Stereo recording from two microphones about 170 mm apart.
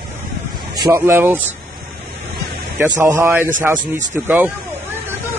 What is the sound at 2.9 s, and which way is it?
Speech, 15° right (ahead or behind).